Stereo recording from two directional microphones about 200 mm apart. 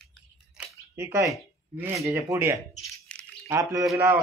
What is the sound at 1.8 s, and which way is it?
Speech, 15° right (ahead or behind).